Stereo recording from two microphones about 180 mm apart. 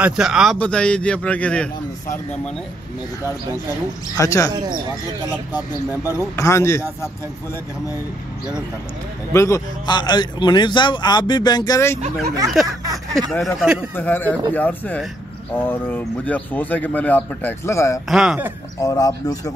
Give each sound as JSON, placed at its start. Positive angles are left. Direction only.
{"t": 0.0, "sound": "a man's voice", "side_deg": -5}
{"t": 4.2, "sound": "speech", "side_deg": 20}
{"t": 5.5, "sound": "speech", "side_deg": -10}
{"t": 6.1, "sound": "speech", "side_deg": 15}
{"t": 9.3, "sound": "a man's voice", "side_deg": 15}
{"t": 12.8, "sound": "speech", "side_deg": -20}
{"t": 13.6, "sound": "a man's voice", "side_deg": -5}
{"t": 13.9, "sound": "speech", "side_deg": 10}
{"t": 18.0, "sound": "a man's voice", "side_deg": -5}
{"t": 18.8, "sound": "a man's voice", "side_deg": 20}